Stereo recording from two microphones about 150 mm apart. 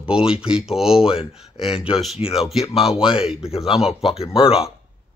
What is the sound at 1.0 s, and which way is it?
Speech, 40° left (ahead or behind).